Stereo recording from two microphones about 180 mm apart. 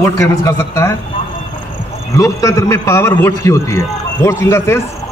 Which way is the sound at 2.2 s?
20° left (ahead or behind).